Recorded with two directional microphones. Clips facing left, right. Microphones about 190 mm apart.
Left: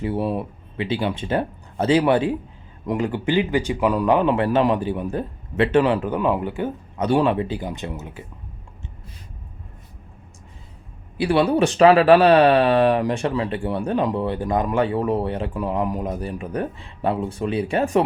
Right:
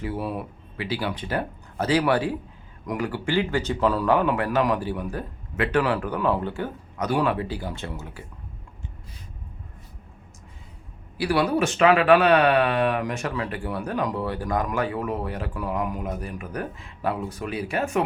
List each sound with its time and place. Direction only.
0.0 s speech: 25° left (ahead or behind)
11.2 s speech: 25° left (ahead or behind)